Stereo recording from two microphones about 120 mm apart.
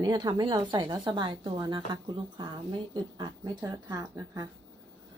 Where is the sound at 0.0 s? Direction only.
35° right (ahead or behind).